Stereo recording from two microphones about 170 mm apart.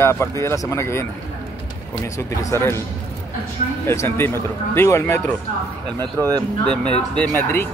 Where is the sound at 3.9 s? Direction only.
15° left (ahead or behind).